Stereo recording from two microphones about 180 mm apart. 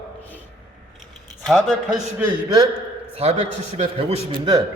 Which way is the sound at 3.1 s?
35° right (ahead or behind).